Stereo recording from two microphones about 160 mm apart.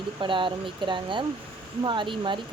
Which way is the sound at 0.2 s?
30° right (ahead or behind).